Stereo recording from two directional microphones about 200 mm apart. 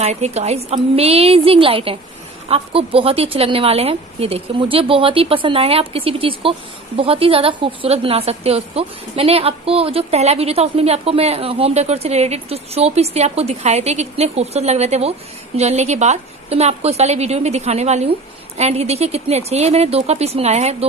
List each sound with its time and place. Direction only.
0.0 s a woman's voice: 35° right (ahead or behind)